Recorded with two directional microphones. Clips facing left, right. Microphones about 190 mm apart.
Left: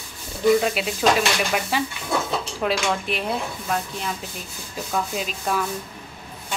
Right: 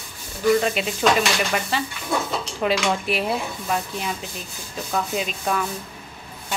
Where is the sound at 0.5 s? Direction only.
5° left (ahead or behind).